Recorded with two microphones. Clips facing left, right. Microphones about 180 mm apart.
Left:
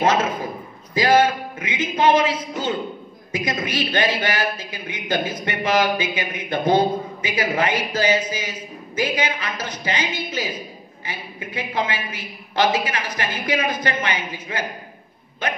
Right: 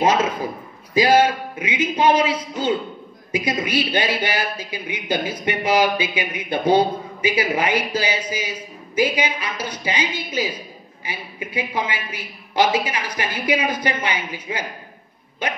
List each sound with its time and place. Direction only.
0.0 s a man's voice: 10° right (ahead or behind)